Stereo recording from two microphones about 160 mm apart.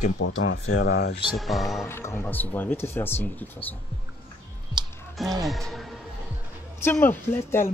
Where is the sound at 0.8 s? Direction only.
85° left.